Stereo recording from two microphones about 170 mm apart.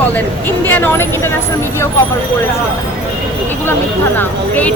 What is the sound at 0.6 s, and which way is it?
Speech, 10° left (ahead or behind).